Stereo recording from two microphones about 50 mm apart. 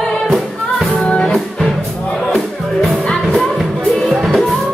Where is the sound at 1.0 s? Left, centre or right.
Centre.